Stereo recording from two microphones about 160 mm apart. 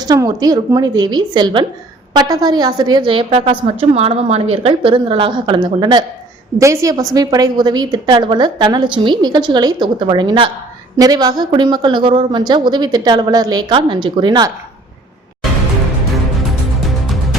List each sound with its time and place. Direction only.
0.0 s a woman's voice: 25° right (ahead or behind)